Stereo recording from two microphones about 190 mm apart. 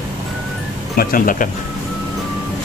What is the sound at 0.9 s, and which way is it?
Speech, 45° left (ahead or behind).